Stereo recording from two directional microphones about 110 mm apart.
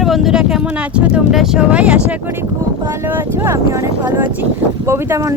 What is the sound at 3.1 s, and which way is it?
Speech, 20° right (ahead or behind).